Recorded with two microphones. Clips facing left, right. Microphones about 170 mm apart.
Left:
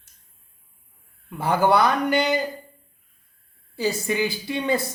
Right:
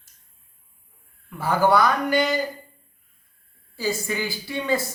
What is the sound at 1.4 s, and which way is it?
Speech, 20° left (ahead or behind).